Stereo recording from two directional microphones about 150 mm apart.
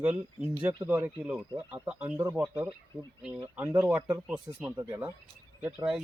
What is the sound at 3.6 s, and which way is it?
Speech, 10° right (ahead or behind).